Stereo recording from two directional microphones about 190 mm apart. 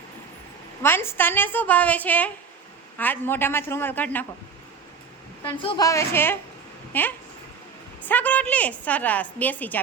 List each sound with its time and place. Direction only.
0.8 s a woman's voice: 10° left (ahead or behind)
5.6 s a woman's voice: 20° left (ahead or behind)